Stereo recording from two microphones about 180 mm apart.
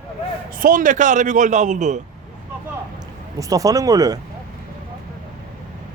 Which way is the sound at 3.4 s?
20° right (ahead or behind).